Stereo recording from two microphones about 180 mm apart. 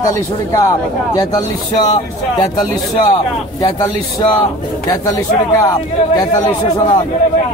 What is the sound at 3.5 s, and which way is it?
Speech, 20° left (ahead or behind).